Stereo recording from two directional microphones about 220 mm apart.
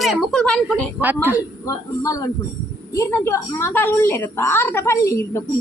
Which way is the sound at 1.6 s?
15° left (ahead or behind).